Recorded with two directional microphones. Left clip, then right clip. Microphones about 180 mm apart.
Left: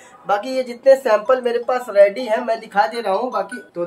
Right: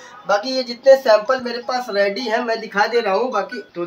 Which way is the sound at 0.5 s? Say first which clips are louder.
Right 1 dB; 35° left (ahead or behind).